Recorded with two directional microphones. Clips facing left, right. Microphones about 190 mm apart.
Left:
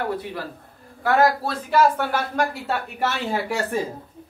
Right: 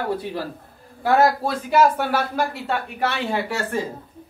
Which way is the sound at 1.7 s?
10° right (ahead or behind).